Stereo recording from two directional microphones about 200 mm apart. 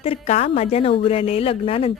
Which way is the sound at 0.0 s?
30° left (ahead or behind).